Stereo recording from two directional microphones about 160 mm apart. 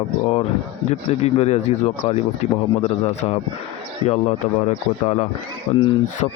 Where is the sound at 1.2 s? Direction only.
45° left (ahead or behind).